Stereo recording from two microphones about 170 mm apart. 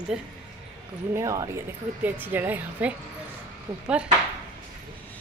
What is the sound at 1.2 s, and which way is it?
Speech, 20° right (ahead or behind).